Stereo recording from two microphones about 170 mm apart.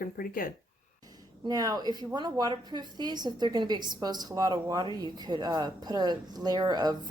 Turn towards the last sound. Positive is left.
turn(degrees=-25)  # may be behind; listen again after turning